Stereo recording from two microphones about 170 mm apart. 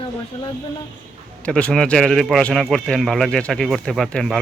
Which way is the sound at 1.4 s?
5° left (ahead or behind).